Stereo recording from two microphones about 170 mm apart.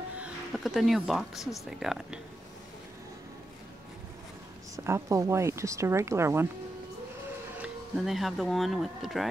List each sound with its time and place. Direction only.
0.2 s speech: centre (ahead or behind)
4.7 s speech: 15° right (ahead or behind)
7.6 s speech: centre (ahead or behind)